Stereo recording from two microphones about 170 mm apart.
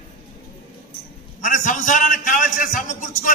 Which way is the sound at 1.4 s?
50° left (ahead or behind).